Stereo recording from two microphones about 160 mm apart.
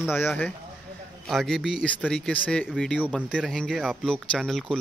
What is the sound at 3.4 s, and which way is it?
Speech, 5° left (ahead or behind).